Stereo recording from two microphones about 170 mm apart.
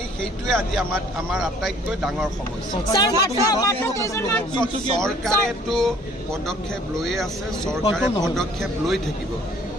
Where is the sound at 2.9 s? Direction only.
20° left (ahead or behind).